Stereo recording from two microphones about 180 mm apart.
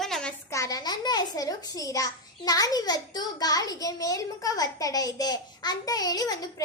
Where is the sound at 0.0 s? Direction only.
5° left (ahead or behind).